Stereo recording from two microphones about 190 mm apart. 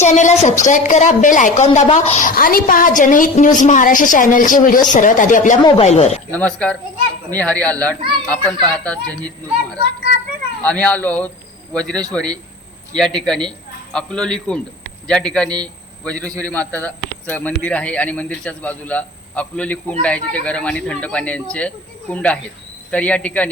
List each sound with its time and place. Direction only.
0.0 s a woman's voice: 40° left (ahead or behind)
6.3 s a child's voice: 5° left (ahead or behind)